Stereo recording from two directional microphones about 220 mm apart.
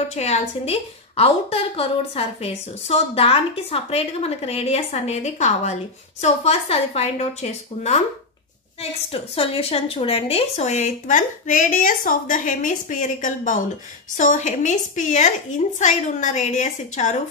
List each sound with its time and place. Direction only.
0.1 s a woman's voice: 30° left (ahead or behind)
9.1 s a woman's voice: 25° left (ahead or behind)